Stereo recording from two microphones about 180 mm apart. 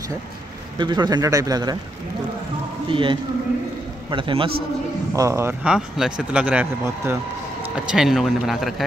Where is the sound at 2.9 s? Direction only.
30° right (ahead or behind).